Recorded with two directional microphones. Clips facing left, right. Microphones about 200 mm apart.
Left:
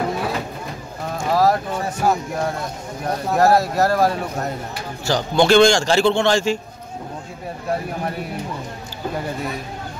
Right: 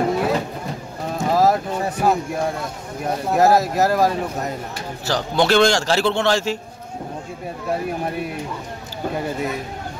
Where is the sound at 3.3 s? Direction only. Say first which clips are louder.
Even; 20° right (ahead or behind).